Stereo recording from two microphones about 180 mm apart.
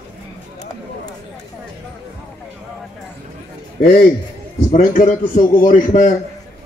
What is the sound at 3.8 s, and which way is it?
Speech, 60° left (ahead or behind).